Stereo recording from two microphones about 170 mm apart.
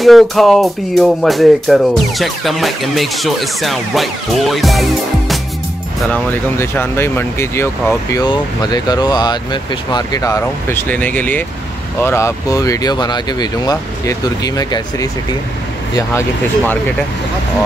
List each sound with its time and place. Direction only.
0.0 s speech: centre (ahead or behind)
6.1 s speech: 15° left (ahead or behind)